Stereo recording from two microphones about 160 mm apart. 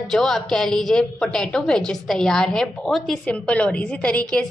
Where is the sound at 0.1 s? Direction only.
5° left (ahead or behind).